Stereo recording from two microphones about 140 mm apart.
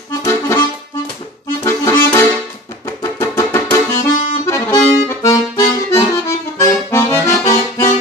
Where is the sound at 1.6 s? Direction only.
20° left (ahead or behind).